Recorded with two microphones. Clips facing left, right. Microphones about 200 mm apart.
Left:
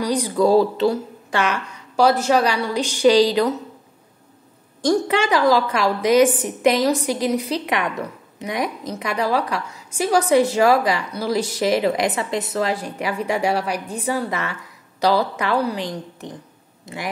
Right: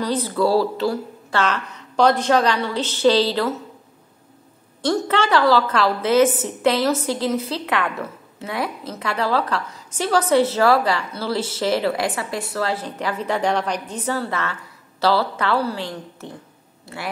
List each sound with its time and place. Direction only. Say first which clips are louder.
0.0 s a woman's voice: left 2 dB; 15° left (ahead or behind)
4.8 s a woman's voice: left 2 dB; 15° left (ahead or behind)